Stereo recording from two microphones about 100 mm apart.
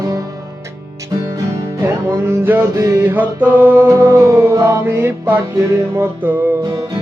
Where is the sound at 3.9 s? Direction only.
30° right (ahead or behind).